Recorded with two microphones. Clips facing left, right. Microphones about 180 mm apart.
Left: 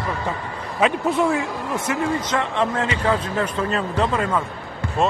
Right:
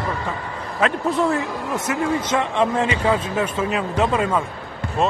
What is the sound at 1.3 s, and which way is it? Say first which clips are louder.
Speech: even; centre (ahead or behind).